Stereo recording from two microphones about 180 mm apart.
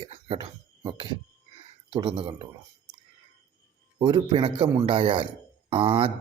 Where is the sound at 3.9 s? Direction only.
30° right (ahead or behind).